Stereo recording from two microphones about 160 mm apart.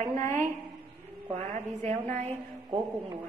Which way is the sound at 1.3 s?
50° right (ahead or behind).